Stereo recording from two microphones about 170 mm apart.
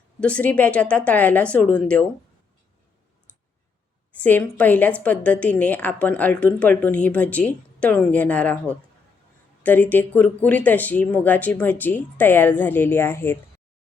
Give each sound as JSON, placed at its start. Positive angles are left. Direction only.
{"t": 0.2, "sound": "a woman's voice", "side_deg": 5}
{"t": 4.1, "sound": "a woman's voice", "side_deg": 10}